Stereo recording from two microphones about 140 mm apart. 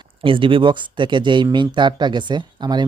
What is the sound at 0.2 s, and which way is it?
Speech, 40° right (ahead or behind).